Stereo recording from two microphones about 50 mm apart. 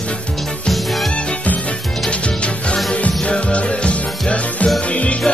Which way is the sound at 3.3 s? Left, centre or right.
Left.